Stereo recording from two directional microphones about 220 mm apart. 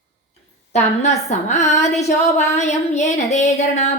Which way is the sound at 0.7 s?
30° left (ahead or behind).